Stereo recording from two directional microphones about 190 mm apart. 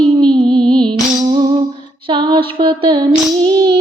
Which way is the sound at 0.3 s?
25° right (ahead or behind).